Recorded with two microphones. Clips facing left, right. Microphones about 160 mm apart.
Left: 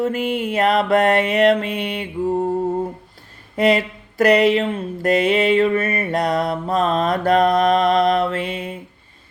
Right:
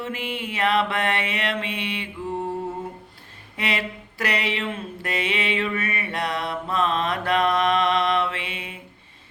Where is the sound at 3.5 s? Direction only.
40° left (ahead or behind).